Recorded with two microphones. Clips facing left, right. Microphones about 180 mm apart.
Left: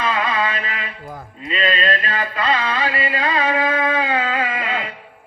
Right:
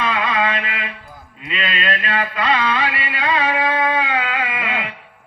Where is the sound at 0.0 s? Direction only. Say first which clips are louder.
Right 1 dB; 35° left (ahead or behind).